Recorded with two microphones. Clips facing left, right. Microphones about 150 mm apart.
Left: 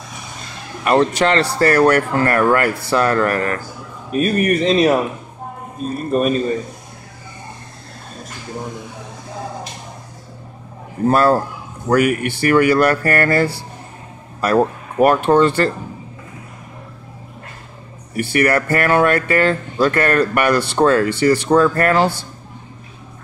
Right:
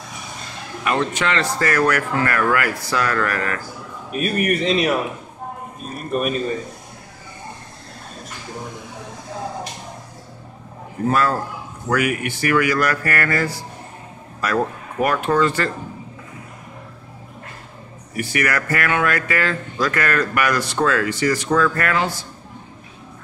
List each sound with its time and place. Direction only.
0.8 s speech: 35° left (ahead or behind)
5.9 s speech: 35° left (ahead or behind)
11.1 s speech: 30° left (ahead or behind)
18.1 s speech: 30° left (ahead or behind)